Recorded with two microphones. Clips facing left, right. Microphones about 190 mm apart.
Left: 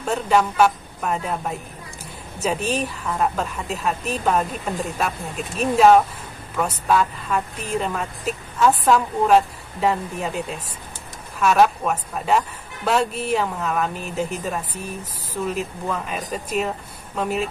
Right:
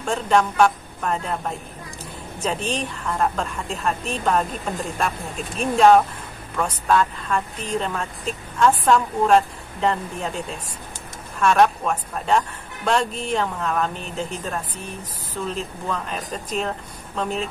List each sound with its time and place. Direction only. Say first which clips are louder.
0.0 s a woman's voice: even; 5° left (ahead or behind)